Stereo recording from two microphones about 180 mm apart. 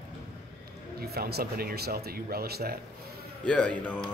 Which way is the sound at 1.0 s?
60° right (ahead or behind).